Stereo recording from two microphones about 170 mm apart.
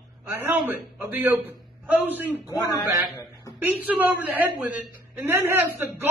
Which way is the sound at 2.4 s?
20° left (ahead or behind).